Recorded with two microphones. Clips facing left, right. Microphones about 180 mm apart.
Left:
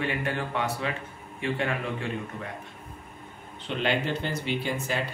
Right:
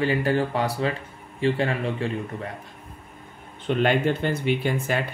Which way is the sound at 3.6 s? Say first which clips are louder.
Right 6 dB; 50° right (ahead or behind).